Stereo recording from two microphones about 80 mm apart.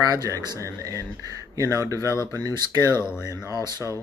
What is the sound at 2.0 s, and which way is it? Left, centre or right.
Speech, left.